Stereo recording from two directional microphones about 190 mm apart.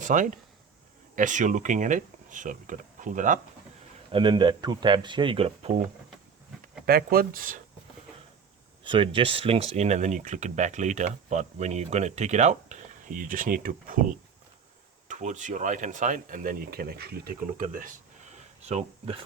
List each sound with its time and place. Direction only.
0.0 s speech: 40° right (ahead or behind)
4.1 s speech: 25° right (ahead or behind)
6.8 s speech: 50° right (ahead or behind)
8.8 s speech: 25° right (ahead or behind); by 14.0 s 45° right (ahead or behind)
15.0 s speech: 40° right (ahead or behind)